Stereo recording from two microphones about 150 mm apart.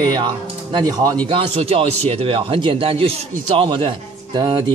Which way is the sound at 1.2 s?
40° right (ahead or behind).